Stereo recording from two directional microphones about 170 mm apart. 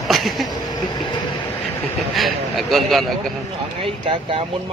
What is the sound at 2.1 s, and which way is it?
Speech, centre (ahead or behind).